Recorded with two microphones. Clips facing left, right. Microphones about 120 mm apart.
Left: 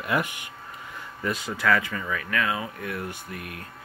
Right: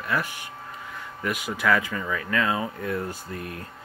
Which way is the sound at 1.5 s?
20° right (ahead or behind).